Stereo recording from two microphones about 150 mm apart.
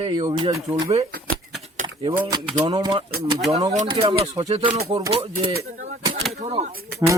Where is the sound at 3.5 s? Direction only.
50° right (ahead or behind).